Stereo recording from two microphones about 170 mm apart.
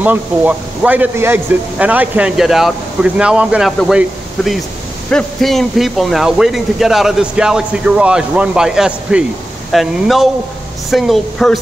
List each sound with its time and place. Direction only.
0.0 s a man's voice: 10° right (ahead or behind)
5.1 s speech: centre (ahead or behind)